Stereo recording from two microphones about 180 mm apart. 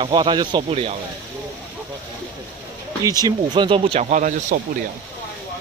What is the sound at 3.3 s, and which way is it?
Speech, 25° right (ahead or behind).